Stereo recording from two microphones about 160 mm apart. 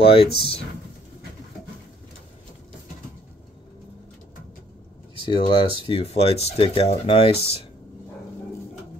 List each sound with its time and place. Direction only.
0.0 s speech: 35° left (ahead or behind)
5.2 s speech: 30° left (ahead or behind)